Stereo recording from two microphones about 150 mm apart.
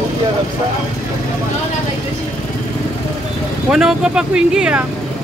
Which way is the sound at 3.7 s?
5° right (ahead or behind).